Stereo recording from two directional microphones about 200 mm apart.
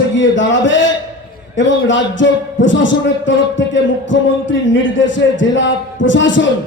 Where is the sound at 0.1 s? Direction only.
70° left (ahead or behind).